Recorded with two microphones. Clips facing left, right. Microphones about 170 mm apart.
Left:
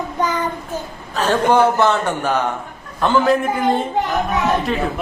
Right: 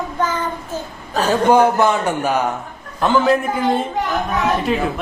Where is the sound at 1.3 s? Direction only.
10° right (ahead or behind).